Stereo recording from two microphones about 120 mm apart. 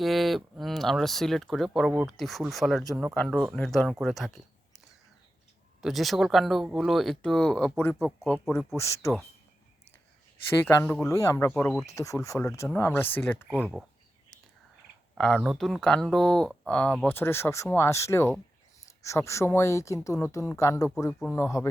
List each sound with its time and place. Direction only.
0.0 s speech: centre (ahead or behind)
1.9 s speech: 10° right (ahead or behind)
2.1 s speech: centre (ahead or behind)
5.8 s speech: centre (ahead or behind)
8.7 s speech: 25° left (ahead or behind)
11.0 s speech: 25° left (ahead or behind)
13.6 s speech: 5° right (ahead or behind)
15.2 s speech: centre (ahead or behind); by 20.9 s 25° left (ahead or behind)
21.1 s speech: 5° left (ahead or behind)
21.3 s speech: 25° left (ahead or behind)